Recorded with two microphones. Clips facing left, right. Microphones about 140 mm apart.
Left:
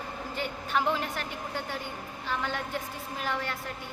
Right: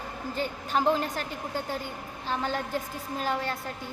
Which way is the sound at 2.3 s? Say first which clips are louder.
Right 3 dB; 35° right (ahead or behind).